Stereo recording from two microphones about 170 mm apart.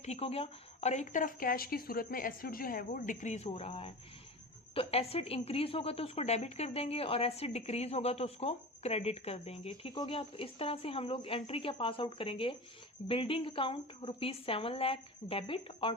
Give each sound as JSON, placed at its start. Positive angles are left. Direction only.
{"t": 0.0, "sound": "a woman's voice", "side_deg": 40}